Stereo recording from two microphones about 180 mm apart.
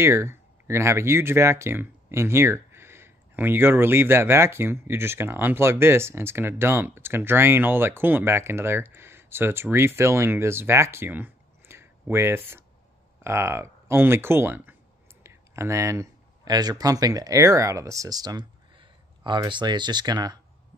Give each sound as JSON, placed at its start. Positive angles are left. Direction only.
{"t": 0.0, "sound": "speech", "side_deg": -15}